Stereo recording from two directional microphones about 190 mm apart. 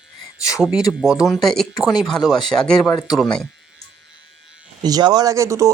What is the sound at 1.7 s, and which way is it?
Speech, 20° left (ahead or behind).